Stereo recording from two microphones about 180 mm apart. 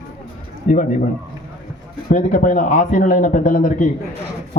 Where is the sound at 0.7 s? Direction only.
45° left (ahead or behind).